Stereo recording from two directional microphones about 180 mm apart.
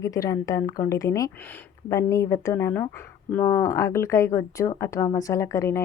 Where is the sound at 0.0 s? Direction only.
20° left (ahead or behind).